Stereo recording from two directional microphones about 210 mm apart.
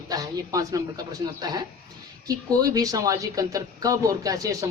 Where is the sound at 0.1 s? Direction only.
15° right (ahead or behind).